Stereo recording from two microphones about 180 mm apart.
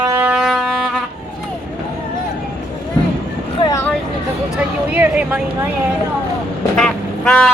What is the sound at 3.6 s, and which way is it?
Vehicle, 20° left (ahead or behind).